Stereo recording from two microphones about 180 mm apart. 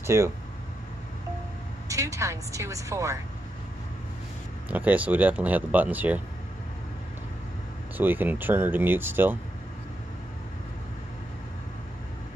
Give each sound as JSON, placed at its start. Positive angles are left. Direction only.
{"t": 0.0, "sound": "speech", "side_deg": -15}
{"t": 1.9, "sound": "a woman's voice", "side_deg": -15}
{"t": 4.6, "sound": "speech", "side_deg": -10}
{"t": 8.0, "sound": "speech", "side_deg": -10}